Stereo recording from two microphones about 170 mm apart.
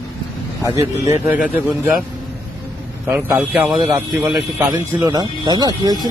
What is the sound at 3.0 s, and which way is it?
Speech, 15° right (ahead or behind).